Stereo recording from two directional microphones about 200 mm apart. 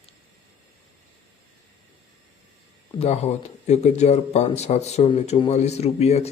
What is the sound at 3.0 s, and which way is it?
Speech, 35° left (ahead or behind).